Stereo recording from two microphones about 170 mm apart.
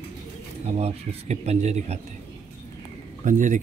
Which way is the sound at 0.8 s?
40° right (ahead or behind).